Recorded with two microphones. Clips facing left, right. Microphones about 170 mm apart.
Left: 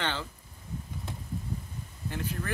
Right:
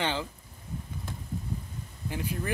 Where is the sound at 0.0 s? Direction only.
15° right (ahead or behind).